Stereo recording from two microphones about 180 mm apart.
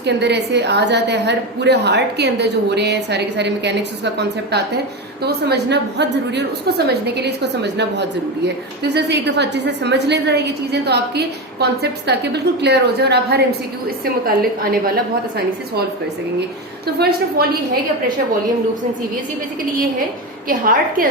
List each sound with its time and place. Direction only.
0.0 s a woman's voice: 70° right (ahead or behind)
16.8 s a woman's voice: 60° right (ahead or behind)
20.5 s a woman's voice: 50° right (ahead or behind)